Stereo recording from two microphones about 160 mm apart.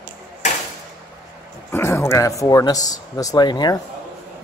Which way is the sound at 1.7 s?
15° left (ahead or behind).